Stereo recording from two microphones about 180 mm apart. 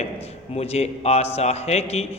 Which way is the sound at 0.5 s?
35° left (ahead or behind).